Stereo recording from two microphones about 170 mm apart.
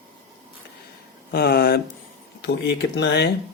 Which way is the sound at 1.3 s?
65° left (ahead or behind).